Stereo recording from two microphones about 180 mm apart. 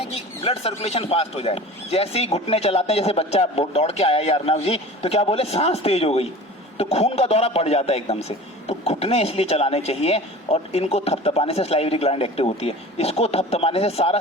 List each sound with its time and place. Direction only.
0.1 s a man's voice: 35° left (ahead or behind)